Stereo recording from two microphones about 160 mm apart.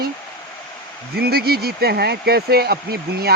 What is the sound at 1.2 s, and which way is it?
Speech, 75° right (ahead or behind).